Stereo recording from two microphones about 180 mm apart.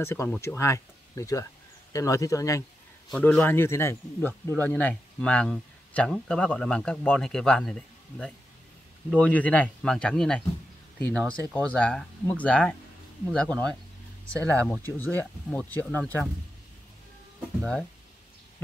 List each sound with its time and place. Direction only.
0.0 s speech: 10° left (ahead or behind)
3.1 s speech: 5° left (ahead or behind)
14.4 s speech: 15° right (ahead or behind)
14.7 s speech: 10° left (ahead or behind)
17.6 s speech: 5° left (ahead or behind)